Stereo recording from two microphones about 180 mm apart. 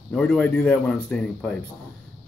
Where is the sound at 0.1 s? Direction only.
5° left (ahead or behind).